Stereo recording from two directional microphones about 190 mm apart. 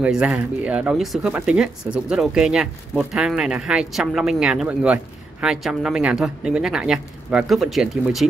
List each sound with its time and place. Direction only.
0.0 s speech: 5° right (ahead or behind)